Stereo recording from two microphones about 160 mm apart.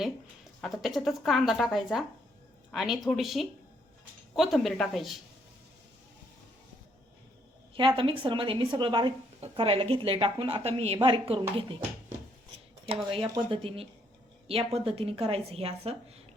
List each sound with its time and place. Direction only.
0.6 s speech: centre (ahead or behind)
7.8 s speech: 35° right (ahead or behind)
12.9 s speech: 35° right (ahead or behind)